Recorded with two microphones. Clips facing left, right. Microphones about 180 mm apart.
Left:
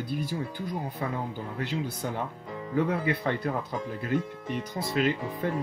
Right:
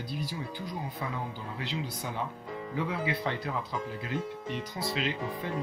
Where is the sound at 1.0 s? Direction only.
55° left (ahead or behind).